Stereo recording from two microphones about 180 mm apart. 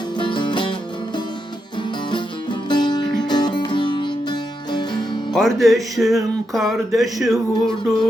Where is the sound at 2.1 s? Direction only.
25° left (ahead or behind).